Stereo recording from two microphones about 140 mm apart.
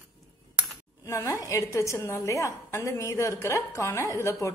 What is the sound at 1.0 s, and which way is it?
A woman's voice, 20° left (ahead or behind).